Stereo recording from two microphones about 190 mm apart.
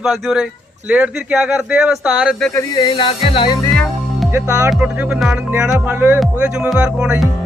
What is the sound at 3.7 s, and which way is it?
Music, 5° left (ahead or behind).